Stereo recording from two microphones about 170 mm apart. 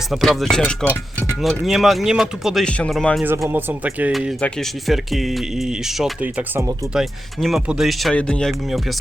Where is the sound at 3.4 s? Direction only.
10° right (ahead or behind).